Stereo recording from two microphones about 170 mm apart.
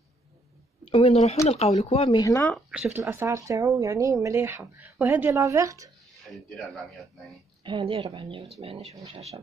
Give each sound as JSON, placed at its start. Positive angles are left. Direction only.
{"t": 0.8, "sound": "speech", "side_deg": 35}
{"t": 2.0, "sound": "speech", "side_deg": 20}
{"t": 2.5, "sound": "speech", "side_deg": -5}
{"t": 6.2, "sound": "speech", "side_deg": 0}
{"t": 7.6, "sound": "speech", "side_deg": -30}